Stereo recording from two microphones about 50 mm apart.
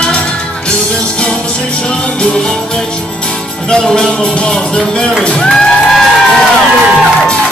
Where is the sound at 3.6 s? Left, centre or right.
Centre.